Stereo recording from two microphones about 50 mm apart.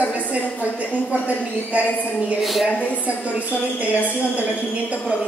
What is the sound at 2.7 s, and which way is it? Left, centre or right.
Speech, left.